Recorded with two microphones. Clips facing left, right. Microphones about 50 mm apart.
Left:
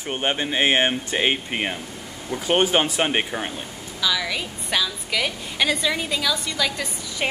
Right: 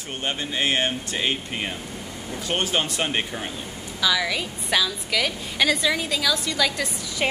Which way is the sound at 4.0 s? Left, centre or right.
Centre.